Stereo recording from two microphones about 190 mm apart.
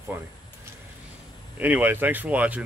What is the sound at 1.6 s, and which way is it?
Speech, 10° right (ahead or behind).